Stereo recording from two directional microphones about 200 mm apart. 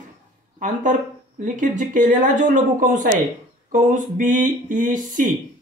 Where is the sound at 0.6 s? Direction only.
40° right (ahead or behind).